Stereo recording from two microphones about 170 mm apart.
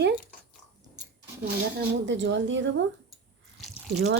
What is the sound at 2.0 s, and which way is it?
Speech, 90° right.